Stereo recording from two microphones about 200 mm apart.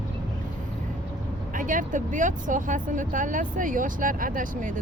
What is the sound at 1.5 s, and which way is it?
Speech, 40° right (ahead or behind).